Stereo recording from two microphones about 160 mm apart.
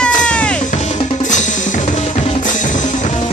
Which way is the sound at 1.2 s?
50° left (ahead or behind).